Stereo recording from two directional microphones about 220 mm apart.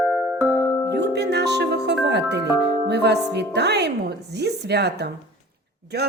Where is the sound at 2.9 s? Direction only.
50° right (ahead or behind).